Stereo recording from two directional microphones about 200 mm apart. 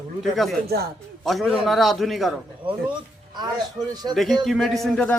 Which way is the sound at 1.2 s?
Centre (ahead or behind).